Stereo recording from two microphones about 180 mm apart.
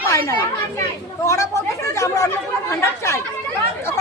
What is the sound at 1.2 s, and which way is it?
Chatter, 15° left (ahead or behind).